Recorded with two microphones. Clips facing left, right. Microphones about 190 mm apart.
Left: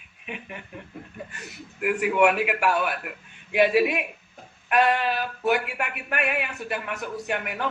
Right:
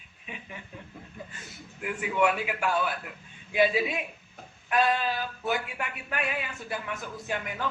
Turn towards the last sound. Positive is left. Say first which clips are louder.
# left 4 dB
turn(degrees=65)  # may be behind; listen again after turning